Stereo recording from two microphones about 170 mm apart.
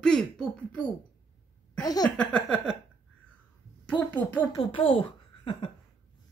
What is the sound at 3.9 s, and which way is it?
Speech, 10° left (ahead or behind).